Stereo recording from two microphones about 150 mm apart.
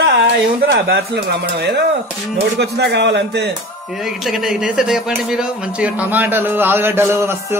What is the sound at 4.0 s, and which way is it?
A man's voice, centre (ahead or behind).